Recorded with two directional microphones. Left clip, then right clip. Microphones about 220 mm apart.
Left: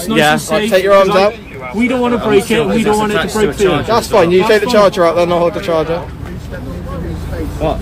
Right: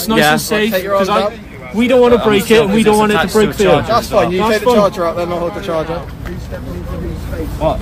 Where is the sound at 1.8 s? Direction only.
40° right (ahead or behind).